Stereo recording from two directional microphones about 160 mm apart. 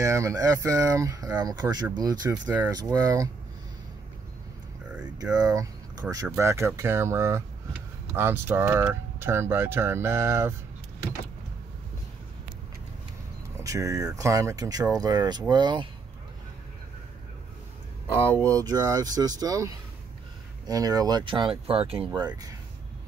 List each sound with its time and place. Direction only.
0.0 s speech: 20° right (ahead or behind)
2.4 s speech: 10° right (ahead or behind)
2.7 s speech: 20° right (ahead or behind)
5.2 s speech: 25° right (ahead or behind)
13.6 s speech: 20° right (ahead or behind)
18.5 s speech: 20° right (ahead or behind)